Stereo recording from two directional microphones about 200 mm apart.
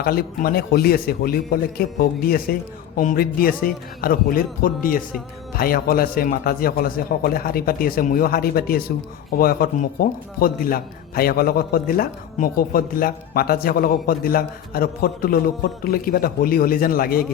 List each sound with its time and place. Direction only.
0.0 s a man's voice: 50° left (ahead or behind)